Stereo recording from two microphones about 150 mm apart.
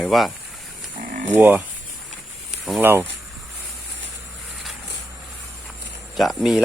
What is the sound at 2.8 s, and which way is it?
Speech, 15° right (ahead or behind).